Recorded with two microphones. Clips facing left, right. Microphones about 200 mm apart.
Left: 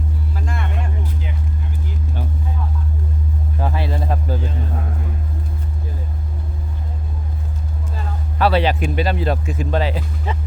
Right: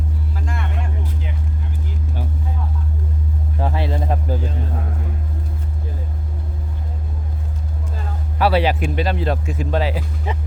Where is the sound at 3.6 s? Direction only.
25° right (ahead or behind).